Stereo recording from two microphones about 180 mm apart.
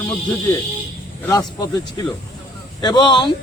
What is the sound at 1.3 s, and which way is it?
A man's voice, 20° left (ahead or behind).